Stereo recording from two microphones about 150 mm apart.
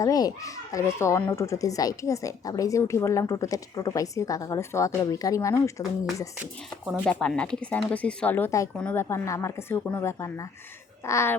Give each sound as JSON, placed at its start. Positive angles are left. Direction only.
{"t": 0.0, "sound": "a child's voice", "side_deg": 25}
{"t": 7.0, "sound": "a child's voice", "side_deg": 5}